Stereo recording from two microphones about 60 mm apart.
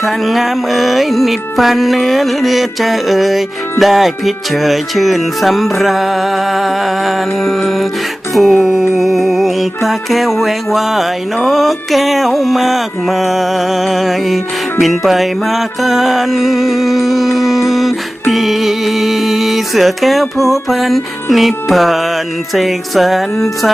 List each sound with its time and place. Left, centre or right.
0.0 s mantra: centre
9.0 s music: centre
11.4 s mantra: centre